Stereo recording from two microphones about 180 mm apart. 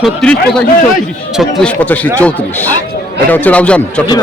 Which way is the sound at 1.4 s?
5° left (ahead or behind).